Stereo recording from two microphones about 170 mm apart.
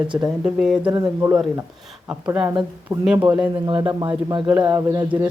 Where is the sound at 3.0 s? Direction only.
10° right (ahead or behind).